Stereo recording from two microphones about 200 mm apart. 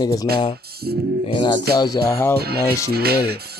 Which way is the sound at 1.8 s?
15° left (ahead or behind).